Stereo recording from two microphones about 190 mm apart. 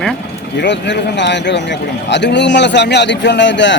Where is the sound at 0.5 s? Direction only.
65° left (ahead or behind).